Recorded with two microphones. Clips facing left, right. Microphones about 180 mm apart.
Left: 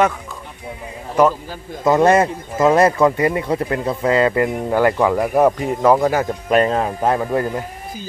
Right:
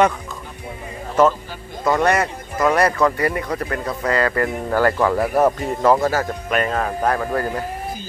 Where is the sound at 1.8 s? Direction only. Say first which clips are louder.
Left 5 dB; 25° left (ahead or behind).